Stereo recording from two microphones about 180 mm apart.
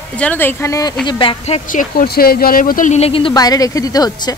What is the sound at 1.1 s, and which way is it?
Speech, 30° left (ahead or behind).